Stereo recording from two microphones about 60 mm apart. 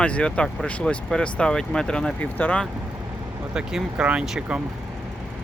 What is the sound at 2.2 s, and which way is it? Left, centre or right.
Speech, left.